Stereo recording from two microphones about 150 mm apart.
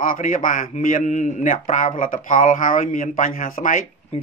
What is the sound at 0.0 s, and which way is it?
A man's voice, 60° left (ahead or behind).